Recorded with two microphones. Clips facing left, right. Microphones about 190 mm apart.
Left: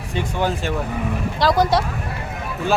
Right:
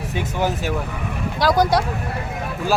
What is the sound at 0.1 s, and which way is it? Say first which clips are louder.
Speech: left 1 dB; 5° right (ahead or behind).